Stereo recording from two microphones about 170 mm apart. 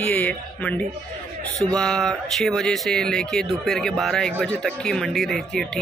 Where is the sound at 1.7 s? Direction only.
5° left (ahead or behind).